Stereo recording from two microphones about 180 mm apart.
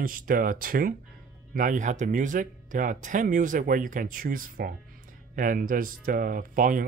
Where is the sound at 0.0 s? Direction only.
50° right (ahead or behind).